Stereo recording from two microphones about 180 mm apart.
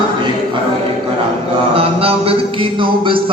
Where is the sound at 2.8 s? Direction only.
30° right (ahead or behind).